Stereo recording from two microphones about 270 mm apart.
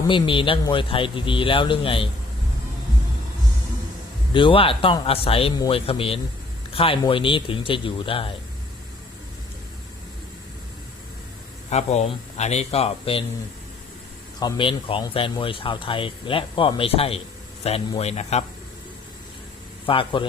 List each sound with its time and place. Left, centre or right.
0.1 s speech: centre
4.4 s speech: centre
11.7 s speech: left
14.3 s speech: centre
19.8 s a man's voice: centre